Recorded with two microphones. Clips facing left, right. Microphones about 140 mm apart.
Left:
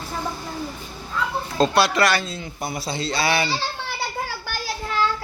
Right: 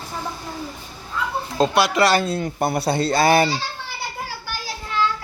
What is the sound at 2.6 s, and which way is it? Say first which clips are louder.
Speech: right 6 dB; 60° right (ahead or behind).